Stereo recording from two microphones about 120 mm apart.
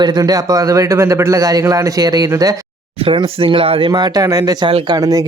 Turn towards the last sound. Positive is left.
turn(degrees=-30)  # may be behind; listen again after turning